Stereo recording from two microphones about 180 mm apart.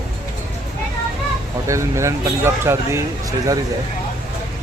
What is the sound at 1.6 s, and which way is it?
Speech, 15° right (ahead or behind).